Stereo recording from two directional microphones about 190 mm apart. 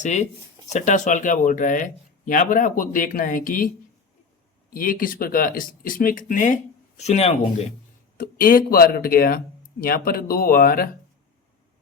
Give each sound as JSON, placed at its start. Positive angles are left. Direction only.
{"t": 0.0, "sound": "speech", "side_deg": 40}
{"t": 4.7, "sound": "speech", "side_deg": 45}
{"t": 8.2, "sound": "speech", "side_deg": 50}